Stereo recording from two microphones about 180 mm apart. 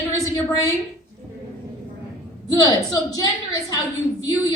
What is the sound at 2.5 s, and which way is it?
Speech, 20° left (ahead or behind).